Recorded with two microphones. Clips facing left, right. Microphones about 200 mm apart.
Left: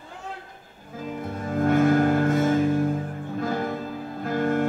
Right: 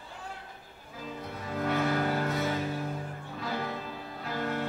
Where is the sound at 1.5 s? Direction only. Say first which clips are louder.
Left 9 dB; 50° left (ahead or behind).